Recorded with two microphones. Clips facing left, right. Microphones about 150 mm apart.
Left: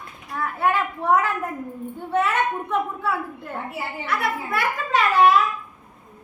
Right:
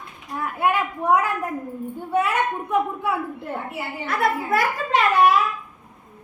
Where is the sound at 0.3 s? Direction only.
15° right (ahead or behind).